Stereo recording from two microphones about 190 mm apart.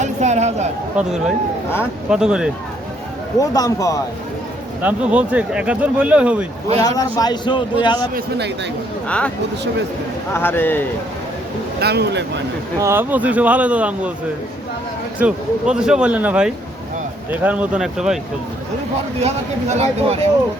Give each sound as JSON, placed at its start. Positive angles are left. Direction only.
{"t": 0.0, "sound": "a sound", "side_deg": -35}
{"t": 0.9, "sound": "speech", "side_deg": -5}
{"t": 3.3, "sound": "speech", "side_deg": 20}
{"t": 4.8, "sound": "speech", "side_deg": -5}
{"t": 6.8, "sound": "speech", "side_deg": 20}
{"t": 8.1, "sound": "speech", "side_deg": -60}
{"t": 9.0, "sound": "speech", "side_deg": 5}
{"t": 10.3, "sound": "speech", "side_deg": 10}
{"t": 11.8, "sound": "speech", "side_deg": -60}
{"t": 12.8, "sound": "speech", "side_deg": -10}
{"t": 15.2, "sound": "speech", "side_deg": -5}
{"t": 19.2, "sound": "speech", "side_deg": -35}